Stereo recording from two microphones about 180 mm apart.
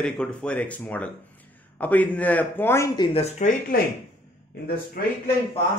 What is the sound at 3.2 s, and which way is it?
Speech, 45° left (ahead or behind).